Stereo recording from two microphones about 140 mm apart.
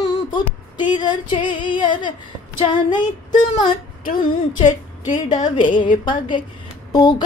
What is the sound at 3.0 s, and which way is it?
Female singing, 60° left (ahead or behind).